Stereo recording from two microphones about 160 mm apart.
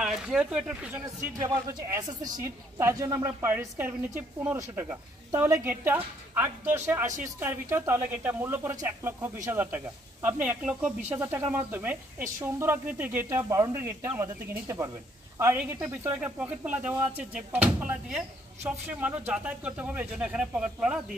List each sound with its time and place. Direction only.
0.0 s speech: 5° right (ahead or behind)
1.4 s speech: 25° right (ahead or behind); by 21.0 s 5° right (ahead or behind)